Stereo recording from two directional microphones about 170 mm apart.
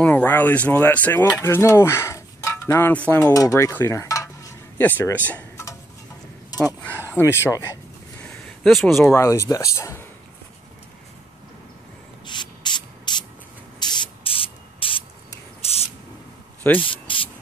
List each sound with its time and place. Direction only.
0.0 s speech: 10° left (ahead or behind)
12.3 s spray: 25° left (ahead or behind)